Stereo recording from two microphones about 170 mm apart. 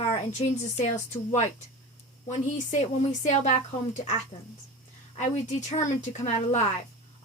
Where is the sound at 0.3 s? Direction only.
45° left (ahead or behind).